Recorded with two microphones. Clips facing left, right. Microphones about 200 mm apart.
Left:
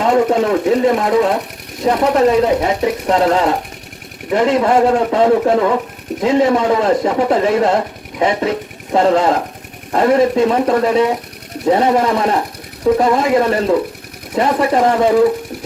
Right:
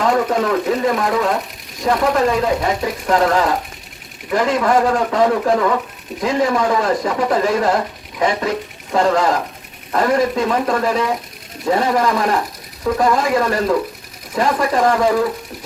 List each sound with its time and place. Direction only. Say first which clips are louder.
0.0 s speech: left 4 dB; 30° left (ahead or behind)